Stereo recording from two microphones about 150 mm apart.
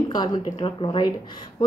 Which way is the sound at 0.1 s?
25° left (ahead or behind).